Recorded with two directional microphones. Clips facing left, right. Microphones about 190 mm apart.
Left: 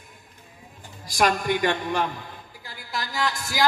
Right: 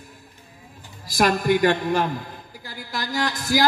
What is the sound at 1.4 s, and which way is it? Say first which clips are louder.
A man's voice: right 5 dB; 40° right (ahead or behind).